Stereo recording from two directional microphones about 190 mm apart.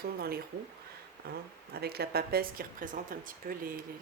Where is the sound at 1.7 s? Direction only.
55° right (ahead or behind).